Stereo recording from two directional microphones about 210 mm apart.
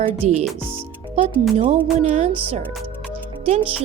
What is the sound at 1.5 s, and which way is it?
Speech, 25° right (ahead or behind).